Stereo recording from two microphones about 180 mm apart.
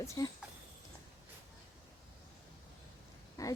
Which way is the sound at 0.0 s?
15° left (ahead or behind).